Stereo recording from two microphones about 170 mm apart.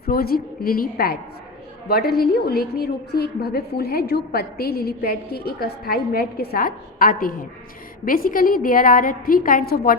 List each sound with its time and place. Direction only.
0.0 s a woman's voice: 65° left (ahead or behind)